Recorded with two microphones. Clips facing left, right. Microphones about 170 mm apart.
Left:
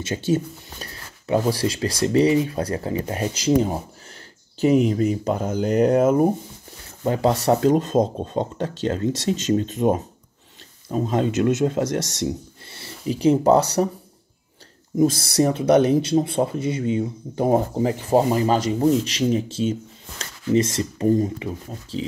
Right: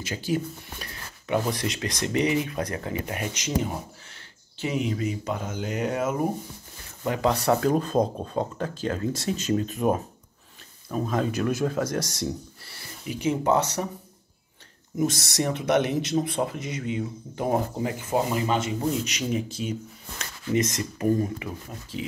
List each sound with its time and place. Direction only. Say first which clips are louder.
0.0 s speech: left 5 dB; 25° left (ahead or behind)
15.0 s speech: left 8 dB; 30° left (ahead or behind)